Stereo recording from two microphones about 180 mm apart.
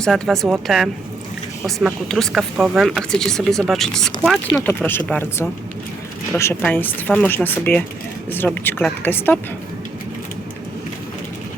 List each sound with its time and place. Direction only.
0.0 s speech: centre (ahead or behind)